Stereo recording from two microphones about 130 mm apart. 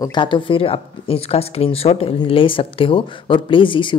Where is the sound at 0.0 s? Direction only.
35° left (ahead or behind).